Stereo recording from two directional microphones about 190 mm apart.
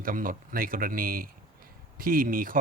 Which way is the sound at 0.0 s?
45° right (ahead or behind).